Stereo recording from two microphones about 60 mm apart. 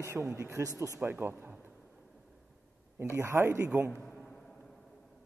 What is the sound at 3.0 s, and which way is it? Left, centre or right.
Speech, right.